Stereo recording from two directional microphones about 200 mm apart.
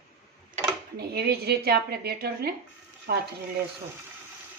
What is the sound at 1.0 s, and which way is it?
A woman's voice, 55° right (ahead or behind).